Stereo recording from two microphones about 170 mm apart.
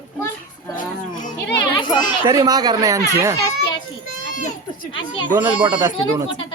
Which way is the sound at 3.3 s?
20° left (ahead or behind).